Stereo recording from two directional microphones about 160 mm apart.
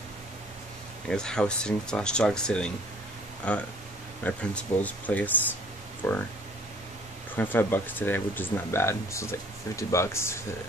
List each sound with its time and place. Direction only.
1.0 s speech: 5° left (ahead or behind)
7.3 s speech: 10° left (ahead or behind)